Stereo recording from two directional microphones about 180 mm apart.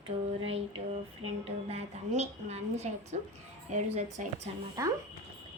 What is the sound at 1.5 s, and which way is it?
A woman's voice, 35° right (ahead or behind).